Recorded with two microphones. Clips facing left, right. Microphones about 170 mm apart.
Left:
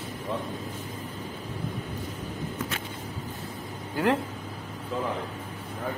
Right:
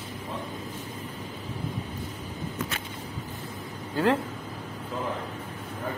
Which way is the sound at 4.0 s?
15° left (ahead or behind).